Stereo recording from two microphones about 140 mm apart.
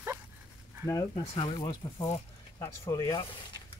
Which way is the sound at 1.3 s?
35° left (ahead or behind).